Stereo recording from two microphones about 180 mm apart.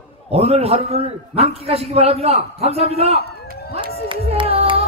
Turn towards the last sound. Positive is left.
turn(degrees=-30)  # may be behind; listen again after turning